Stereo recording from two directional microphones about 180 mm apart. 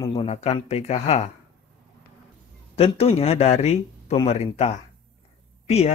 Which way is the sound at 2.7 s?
35° left (ahead or behind).